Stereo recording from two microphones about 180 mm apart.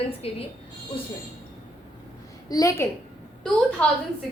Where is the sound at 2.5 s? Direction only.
20° left (ahead or behind).